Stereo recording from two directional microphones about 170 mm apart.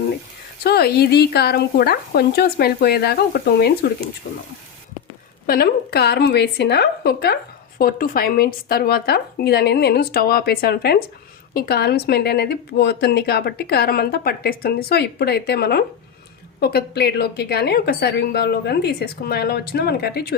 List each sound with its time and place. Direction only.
0.6 s a woman's voice: 70° left (ahead or behind)
5.5 s a woman's voice: 65° left (ahead or behind)